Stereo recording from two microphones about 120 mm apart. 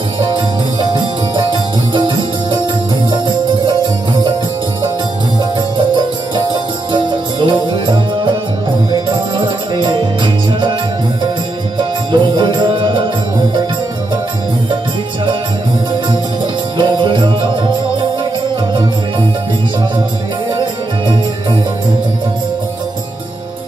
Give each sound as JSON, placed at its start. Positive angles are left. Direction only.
{"t": 0.3, "sound": "music", "side_deg": -40}
{"t": 6.9, "sound": "music", "side_deg": -40}
{"t": 9.1, "sound": "music", "side_deg": -40}
{"t": 12.1, "sound": "music", "side_deg": -40}
{"t": 16.7, "sound": "music", "side_deg": -40}